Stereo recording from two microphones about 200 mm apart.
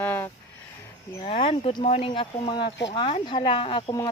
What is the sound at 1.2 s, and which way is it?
Speech, 30° left (ahead or behind).